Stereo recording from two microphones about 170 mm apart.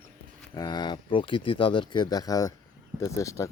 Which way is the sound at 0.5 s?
25° left (ahead or behind).